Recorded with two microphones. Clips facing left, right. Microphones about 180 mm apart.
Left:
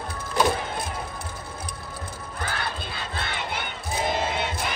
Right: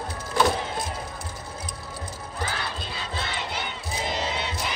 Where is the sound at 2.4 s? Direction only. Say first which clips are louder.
Left 1 dB; 55° left (ahead or behind).